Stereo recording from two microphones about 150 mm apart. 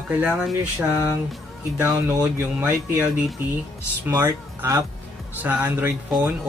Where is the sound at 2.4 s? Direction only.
15° right (ahead or behind).